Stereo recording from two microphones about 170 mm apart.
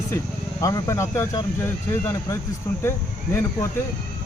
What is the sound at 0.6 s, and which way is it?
Speech, 20° left (ahead or behind).